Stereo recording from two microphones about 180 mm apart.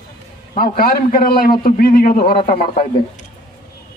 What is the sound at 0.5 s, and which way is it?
A man's voice, 55° left (ahead or behind).